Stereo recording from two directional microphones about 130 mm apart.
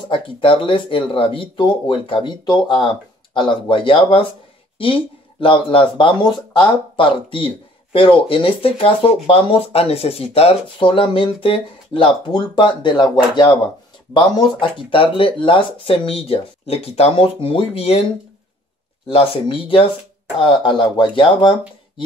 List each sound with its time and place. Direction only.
0.1 s speech: 45° left (ahead or behind)
19.0 s speech: 45° left (ahead or behind)